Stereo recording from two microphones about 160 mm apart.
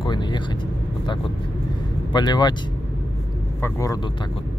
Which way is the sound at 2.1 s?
25° left (ahead or behind).